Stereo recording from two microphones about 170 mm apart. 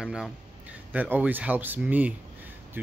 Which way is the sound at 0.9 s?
10° right (ahead or behind).